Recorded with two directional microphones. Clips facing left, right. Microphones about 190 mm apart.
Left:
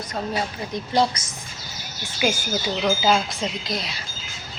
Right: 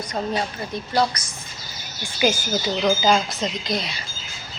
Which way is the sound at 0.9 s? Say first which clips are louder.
Left 1 dB; 25° left (ahead or behind).